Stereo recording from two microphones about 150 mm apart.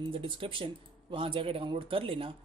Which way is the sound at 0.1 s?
35° right (ahead or behind).